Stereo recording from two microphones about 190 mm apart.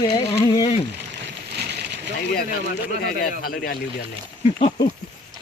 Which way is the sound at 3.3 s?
50° left (ahead or behind).